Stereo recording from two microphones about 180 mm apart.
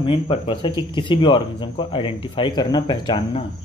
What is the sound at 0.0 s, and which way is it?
Speech, 30° left (ahead or behind).